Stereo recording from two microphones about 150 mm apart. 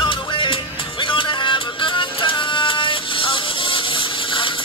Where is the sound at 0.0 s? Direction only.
35° left (ahead or behind).